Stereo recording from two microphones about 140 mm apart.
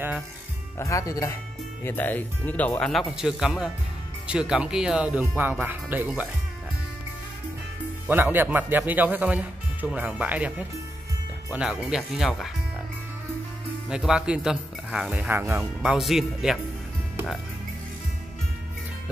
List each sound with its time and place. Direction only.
0.7 s speech: 20° left (ahead or behind); by 6.2 s 10° right (ahead or behind)
8.1 s speech: 15° right (ahead or behind)
11.5 s speech: 5° right (ahead or behind)
13.8 s speech: 5° right (ahead or behind)
15.8 s speech: 5° right (ahead or behind)